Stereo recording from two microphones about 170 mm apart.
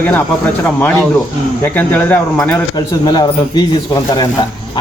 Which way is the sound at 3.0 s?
25° left (ahead or behind).